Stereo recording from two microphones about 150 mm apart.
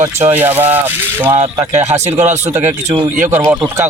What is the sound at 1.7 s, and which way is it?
Speech, 50° right (ahead or behind).